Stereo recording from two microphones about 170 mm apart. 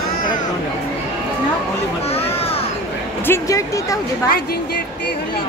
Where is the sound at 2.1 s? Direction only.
35° left (ahead or behind).